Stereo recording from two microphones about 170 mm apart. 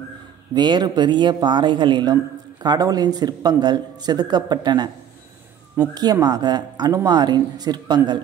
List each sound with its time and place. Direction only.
0.6 s speech: 25° right (ahead or behind)